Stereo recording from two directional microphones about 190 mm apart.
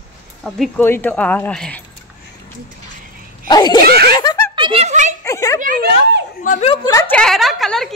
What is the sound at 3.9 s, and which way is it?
Snicker, 55° right (ahead or behind).